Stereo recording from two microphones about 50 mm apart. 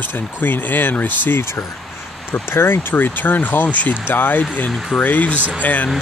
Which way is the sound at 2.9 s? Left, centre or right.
Left.